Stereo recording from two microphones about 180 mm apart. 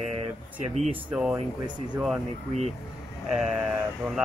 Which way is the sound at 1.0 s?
5° right (ahead or behind).